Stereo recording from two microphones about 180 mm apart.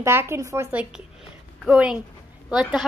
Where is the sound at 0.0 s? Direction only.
15° right (ahead or behind).